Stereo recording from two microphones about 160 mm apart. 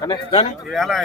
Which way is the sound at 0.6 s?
Centre (ahead or behind).